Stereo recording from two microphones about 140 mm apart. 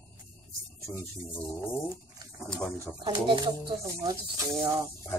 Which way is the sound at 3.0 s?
35° right (ahead or behind).